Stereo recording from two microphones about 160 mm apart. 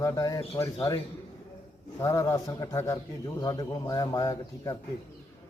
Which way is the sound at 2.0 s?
20° left (ahead or behind).